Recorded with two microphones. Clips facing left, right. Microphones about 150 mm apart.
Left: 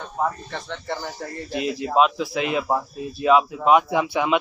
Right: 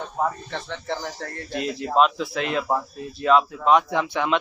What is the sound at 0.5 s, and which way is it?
Speech, centre (ahead or behind).